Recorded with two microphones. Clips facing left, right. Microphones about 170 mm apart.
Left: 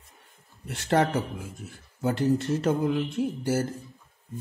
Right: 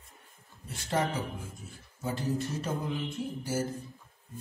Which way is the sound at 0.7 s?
75° left (ahead or behind).